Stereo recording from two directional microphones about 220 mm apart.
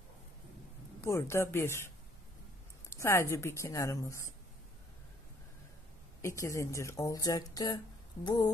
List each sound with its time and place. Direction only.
1.0 s speech: 10° left (ahead or behind)
2.9 s speech: 10° left (ahead or behind)
6.2 s speech: 15° left (ahead or behind)